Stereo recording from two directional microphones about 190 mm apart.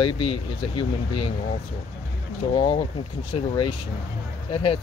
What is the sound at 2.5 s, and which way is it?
Speech, 30° left (ahead or behind).